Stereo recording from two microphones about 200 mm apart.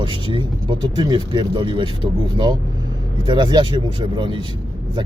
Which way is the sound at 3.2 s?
25° right (ahead or behind).